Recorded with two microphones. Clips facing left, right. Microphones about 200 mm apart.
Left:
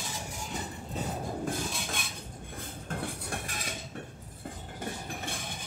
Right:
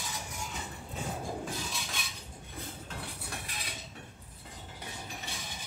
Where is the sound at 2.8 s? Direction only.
50° left (ahead or behind).